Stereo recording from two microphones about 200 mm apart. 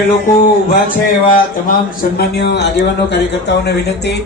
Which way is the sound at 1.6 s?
50° left (ahead or behind).